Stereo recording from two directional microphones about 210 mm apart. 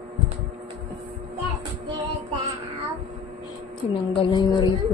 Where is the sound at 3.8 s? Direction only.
20° left (ahead or behind).